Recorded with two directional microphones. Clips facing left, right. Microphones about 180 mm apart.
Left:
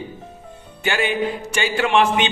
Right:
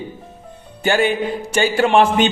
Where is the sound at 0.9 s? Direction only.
40° right (ahead or behind).